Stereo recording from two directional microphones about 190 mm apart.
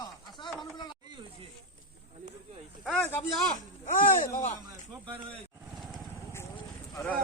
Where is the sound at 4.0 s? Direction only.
45° left (ahead or behind).